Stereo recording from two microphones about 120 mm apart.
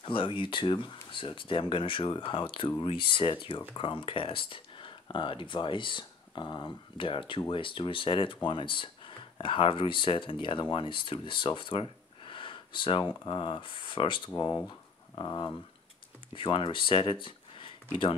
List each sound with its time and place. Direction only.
0.0 s speech: 45° left (ahead or behind)
14.3 s speech: 30° left (ahead or behind)
14.7 s a sound: 40° left (ahead or behind)
16.3 s speech: 45° left (ahead or behind)